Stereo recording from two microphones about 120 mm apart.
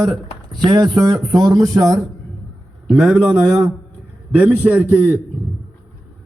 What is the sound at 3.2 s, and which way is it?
A man's voice, 25° right (ahead or behind).